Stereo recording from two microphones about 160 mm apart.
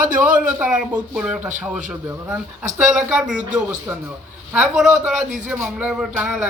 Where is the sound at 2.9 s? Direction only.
5° right (ahead or behind).